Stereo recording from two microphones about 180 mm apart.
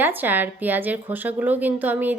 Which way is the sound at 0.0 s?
10° right (ahead or behind).